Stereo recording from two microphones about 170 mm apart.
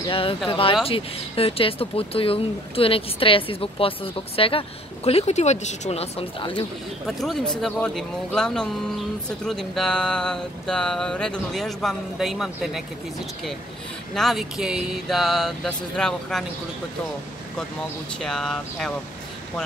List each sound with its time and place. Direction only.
0.0 s speech: 30° left (ahead or behind)
7.1 s speech: centre (ahead or behind)
14.1 s speech: centre (ahead or behind)
18.2 s speech: 5° left (ahead or behind)